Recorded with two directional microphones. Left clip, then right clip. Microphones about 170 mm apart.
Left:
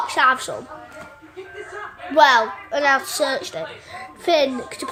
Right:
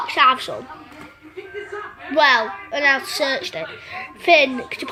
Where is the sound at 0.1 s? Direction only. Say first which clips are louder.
Right 3 dB; 15° left (ahead or behind).